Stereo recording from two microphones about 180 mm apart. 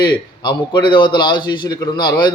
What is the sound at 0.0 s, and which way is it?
A man's voice, 25° left (ahead or behind).